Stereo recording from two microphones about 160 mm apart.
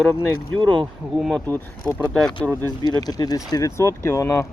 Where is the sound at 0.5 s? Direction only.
30° right (ahead or behind).